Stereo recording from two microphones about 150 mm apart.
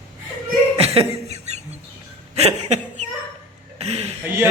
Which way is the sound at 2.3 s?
45° right (ahead or behind).